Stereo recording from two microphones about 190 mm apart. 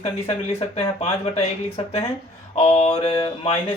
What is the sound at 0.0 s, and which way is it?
Speech, 30° left (ahead or behind).